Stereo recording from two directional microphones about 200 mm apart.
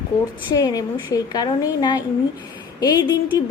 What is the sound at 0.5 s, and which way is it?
Speech, 20° left (ahead or behind).